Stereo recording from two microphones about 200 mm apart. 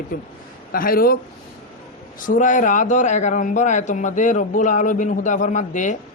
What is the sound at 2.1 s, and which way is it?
A man's voice, 40° left (ahead or behind).